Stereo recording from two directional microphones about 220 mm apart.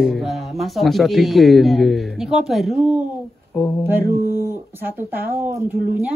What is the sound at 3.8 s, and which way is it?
Speech, 10° right (ahead or behind).